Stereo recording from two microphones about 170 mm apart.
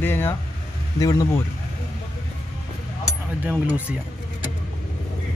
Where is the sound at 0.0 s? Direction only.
15° left (ahead or behind).